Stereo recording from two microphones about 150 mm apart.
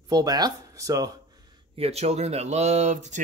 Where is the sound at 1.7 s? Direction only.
45° right (ahead or behind).